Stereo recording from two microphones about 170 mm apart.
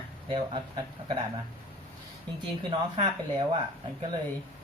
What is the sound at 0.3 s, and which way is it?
Speech, 30° right (ahead or behind).